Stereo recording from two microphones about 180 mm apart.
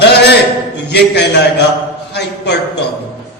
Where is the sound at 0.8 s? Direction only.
70° left (ahead or behind).